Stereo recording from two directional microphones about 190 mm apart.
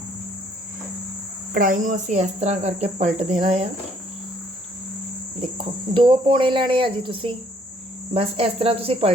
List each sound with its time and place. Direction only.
1.5 s speech: 45° right (ahead or behind)
5.9 s speech: 25° right (ahead or behind)